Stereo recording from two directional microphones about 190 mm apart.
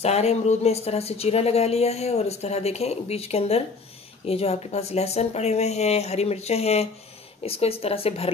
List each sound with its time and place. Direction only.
0.0 s speech: 35° left (ahead or behind)